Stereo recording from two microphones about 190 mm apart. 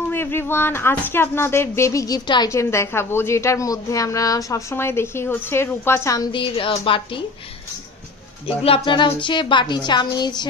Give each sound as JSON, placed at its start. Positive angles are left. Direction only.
{"t": 0.1, "sound": "speech", "side_deg": 10}
{"t": 8.5, "sound": "a woman's voice", "side_deg": 30}